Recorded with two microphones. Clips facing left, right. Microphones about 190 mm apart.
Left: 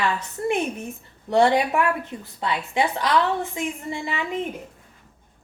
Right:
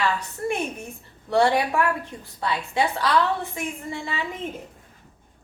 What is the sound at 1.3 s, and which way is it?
A woman's voice, 20° left (ahead or behind).